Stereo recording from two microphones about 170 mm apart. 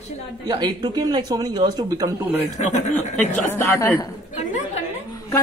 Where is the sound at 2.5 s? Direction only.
45° left (ahead or behind).